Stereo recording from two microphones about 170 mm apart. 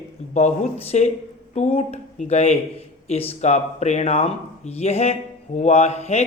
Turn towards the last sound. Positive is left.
turn(degrees=40)  # may be behind; listen again after turning